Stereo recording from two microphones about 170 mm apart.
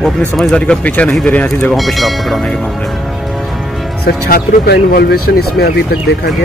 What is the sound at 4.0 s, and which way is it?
Speech, 65° left (ahead or behind).